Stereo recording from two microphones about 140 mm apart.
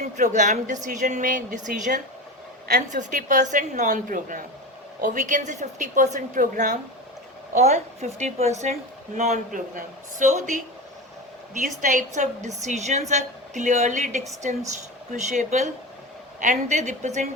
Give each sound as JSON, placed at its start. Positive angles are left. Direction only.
{"t": 0.2, "sound": "a woman's voice", "side_deg": -60}
{"t": 7.5, "sound": "a woman's voice", "side_deg": -50}